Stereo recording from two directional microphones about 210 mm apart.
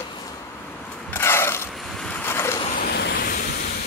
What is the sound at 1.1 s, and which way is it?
Mechanisms, 10° left (ahead or behind).